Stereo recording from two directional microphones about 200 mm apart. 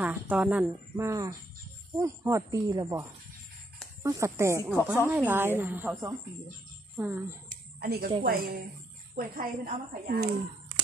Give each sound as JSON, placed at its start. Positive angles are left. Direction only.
{"t": 0.0, "sound": "speech", "side_deg": -5}
{"t": 7.4, "sound": "a sound", "side_deg": -50}
{"t": 8.2, "sound": "a woman's voice", "side_deg": -50}